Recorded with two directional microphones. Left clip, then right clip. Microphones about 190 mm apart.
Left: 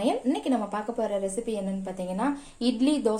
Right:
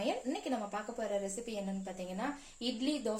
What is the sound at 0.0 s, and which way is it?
Speech, 35° left (ahead or behind).